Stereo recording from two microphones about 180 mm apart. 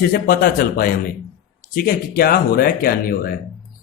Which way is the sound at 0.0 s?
55° left (ahead or behind).